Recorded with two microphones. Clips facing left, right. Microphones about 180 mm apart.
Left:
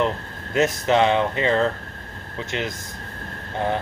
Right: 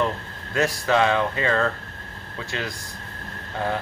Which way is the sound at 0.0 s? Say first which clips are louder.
Left 2 dB; 20° left (ahead or behind).